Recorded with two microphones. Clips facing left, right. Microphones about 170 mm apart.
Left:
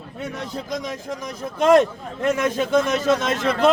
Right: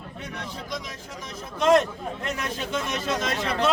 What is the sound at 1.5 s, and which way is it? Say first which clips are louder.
A man's voice: left 4 dB; 50° left (ahead or behind).